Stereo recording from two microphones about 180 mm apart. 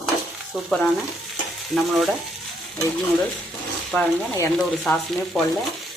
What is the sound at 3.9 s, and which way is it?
Speech, 10° left (ahead or behind).